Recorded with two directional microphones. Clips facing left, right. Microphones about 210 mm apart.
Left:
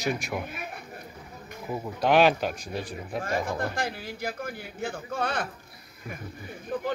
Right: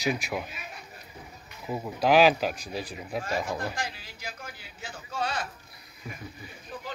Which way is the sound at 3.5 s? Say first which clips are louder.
Left 3 dB; 55° left (ahead or behind).